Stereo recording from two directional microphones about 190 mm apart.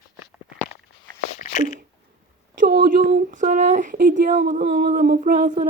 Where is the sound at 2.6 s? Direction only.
50° right (ahead or behind).